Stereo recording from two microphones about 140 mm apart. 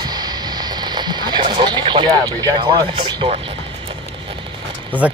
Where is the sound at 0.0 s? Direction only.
30° right (ahead or behind).